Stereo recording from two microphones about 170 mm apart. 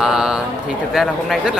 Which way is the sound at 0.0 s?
5° right (ahead or behind).